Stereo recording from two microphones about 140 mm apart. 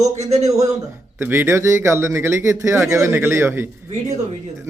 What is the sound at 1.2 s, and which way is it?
Speech, 15° right (ahead or behind).